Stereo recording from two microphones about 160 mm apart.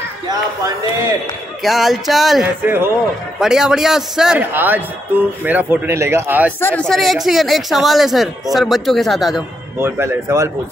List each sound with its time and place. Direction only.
0.3 s speech: 20° right (ahead or behind)
1.6 s speech: centre (ahead or behind)
6.6 s speech: 10° left (ahead or behind)
9.8 s speech: 15° right (ahead or behind)